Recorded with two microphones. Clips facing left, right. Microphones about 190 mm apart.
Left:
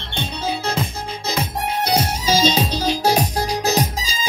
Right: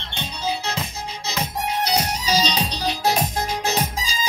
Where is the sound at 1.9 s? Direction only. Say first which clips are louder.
Left 6 dB; 50° left (ahead or behind).